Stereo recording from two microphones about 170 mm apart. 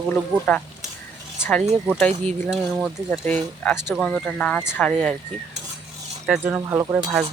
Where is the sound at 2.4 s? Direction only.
Centre (ahead or behind).